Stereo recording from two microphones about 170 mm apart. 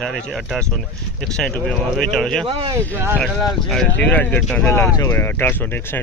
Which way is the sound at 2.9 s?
10° right (ahead or behind).